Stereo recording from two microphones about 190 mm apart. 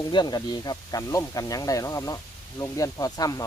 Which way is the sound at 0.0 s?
20° left (ahead or behind).